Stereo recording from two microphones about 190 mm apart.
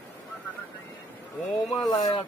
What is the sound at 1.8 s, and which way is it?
Speech, 20° left (ahead or behind).